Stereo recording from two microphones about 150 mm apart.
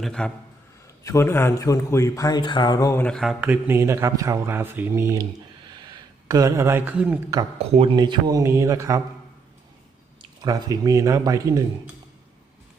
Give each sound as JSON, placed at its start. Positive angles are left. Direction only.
{"t": 0.0, "sound": "speech", "side_deg": 5}
{"t": 1.0, "sound": "a man's voice", "side_deg": 20}
{"t": 3.0, "sound": "speech", "side_deg": 5}
{"t": 3.4, "sound": "speech", "side_deg": -15}
{"t": 5.8, "sound": "speech", "side_deg": -25}
{"t": 7.6, "sound": "speech", "side_deg": -40}
{"t": 7.9, "sound": "speech", "side_deg": -30}
{"t": 10.4, "sound": "speech", "side_deg": -25}